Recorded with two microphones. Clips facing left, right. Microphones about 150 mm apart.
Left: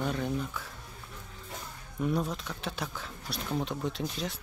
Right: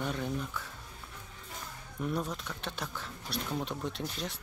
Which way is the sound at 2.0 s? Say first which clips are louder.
Left 4 dB; centre (ahead or behind).